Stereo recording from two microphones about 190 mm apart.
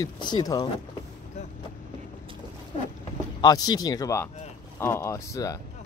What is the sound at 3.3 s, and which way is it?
Speech, 20° left (ahead or behind).